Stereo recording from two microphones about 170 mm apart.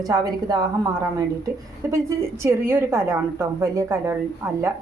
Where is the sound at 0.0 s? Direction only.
20° right (ahead or behind).